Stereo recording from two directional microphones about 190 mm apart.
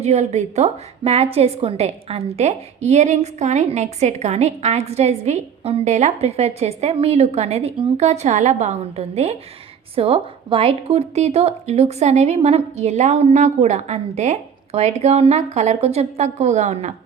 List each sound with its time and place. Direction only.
0.0 s a woman's voice: 35° right (ahead or behind)